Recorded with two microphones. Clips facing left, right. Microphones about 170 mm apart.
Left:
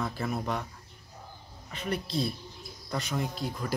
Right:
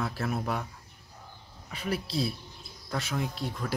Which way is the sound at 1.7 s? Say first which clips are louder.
Even; 5° right (ahead or behind).